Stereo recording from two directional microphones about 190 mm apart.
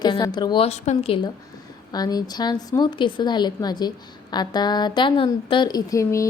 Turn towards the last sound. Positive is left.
turn(degrees=15)  # may be behind; listen again after turning